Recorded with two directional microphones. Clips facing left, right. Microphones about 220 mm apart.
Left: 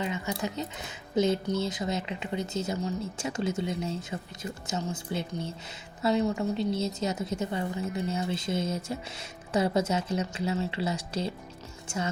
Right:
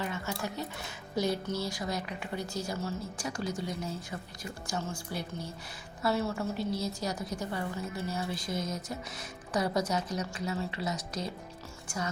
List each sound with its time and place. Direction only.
0.0 s a woman's voice: 20° left (ahead or behind)